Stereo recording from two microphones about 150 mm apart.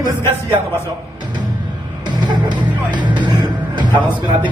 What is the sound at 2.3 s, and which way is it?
Music, 30° right (ahead or behind).